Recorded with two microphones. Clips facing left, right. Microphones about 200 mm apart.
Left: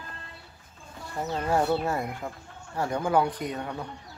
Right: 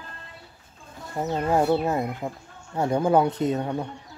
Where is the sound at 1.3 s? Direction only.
25° right (ahead or behind).